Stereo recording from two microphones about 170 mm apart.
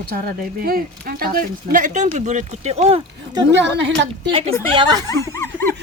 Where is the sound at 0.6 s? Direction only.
60° right (ahead or behind); by 3.0 s 40° right (ahead or behind).